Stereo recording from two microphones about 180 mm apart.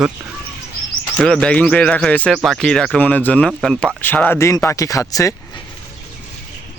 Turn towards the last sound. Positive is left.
turn(degrees=20)  # may be behind; listen again after turning